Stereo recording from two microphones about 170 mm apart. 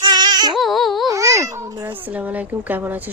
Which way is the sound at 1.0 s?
20° right (ahead or behind).